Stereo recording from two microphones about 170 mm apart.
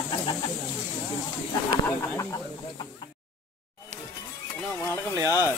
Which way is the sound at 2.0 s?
15° left (ahead or behind).